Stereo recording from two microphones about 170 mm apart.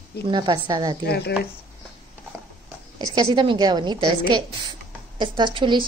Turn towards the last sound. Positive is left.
turn(degrees=-30)  # may be behind; listen again after turning